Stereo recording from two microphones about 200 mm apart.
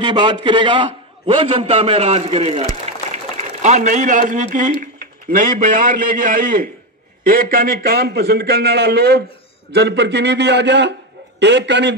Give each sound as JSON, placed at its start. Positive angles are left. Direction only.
{"t": 0.0, "sound": "a man's voice", "side_deg": -20}